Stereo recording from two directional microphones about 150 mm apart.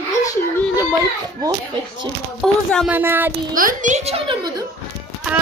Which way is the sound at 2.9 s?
15° right (ahead or behind).